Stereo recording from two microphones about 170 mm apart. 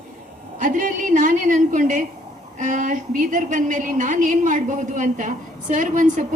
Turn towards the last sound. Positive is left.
turn(degrees=-50)  # may be behind; listen again after turning